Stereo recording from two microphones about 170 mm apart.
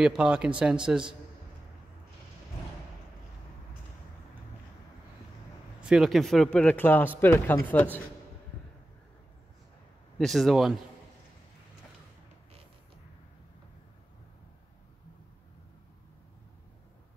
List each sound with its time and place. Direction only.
0.0 s speech: 5° right (ahead or behind)
5.8 s speech: 5° right (ahead or behind)
10.1 s speech: centre (ahead or behind)